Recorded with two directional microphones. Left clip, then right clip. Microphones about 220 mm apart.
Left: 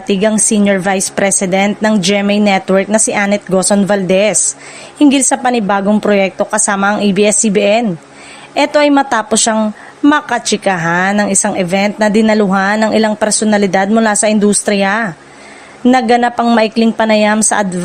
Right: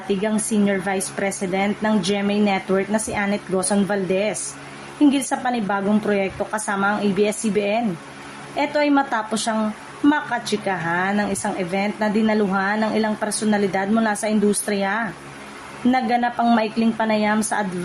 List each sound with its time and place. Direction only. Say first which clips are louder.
0.1 s a woman's voice: left 10 dB; 40° left (ahead or behind)